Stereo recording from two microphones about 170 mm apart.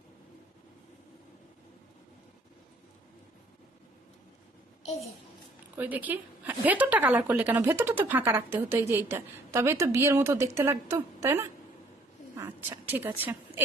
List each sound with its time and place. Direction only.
5.7 s a woman's voice: 10° right (ahead or behind)